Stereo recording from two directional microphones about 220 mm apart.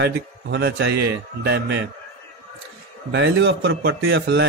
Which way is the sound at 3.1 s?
55° right (ahead or behind).